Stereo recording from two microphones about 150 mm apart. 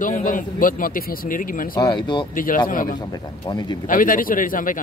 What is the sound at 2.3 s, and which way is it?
Speech, 65° left (ahead or behind).